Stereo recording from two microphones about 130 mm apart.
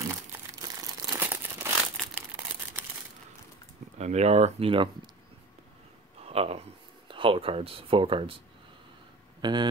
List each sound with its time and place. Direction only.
0.0 s crumpling: 20° right (ahead or behind)
1.2 s crumpling: 15° right (ahead or behind)
2.1 s a sound: 15° right (ahead or behind)
4.0 s speech: 60° right (ahead or behind); by 5.1 s 45° right (ahead or behind)
6.2 s speech: 50° right (ahead or behind)
9.4 s speech: 35° right (ahead or behind)